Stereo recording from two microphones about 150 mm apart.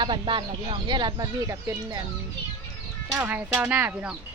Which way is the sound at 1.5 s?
20° right (ahead or behind).